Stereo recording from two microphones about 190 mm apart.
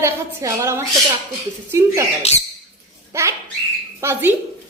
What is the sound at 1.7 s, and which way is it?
Speech, 15° right (ahead or behind).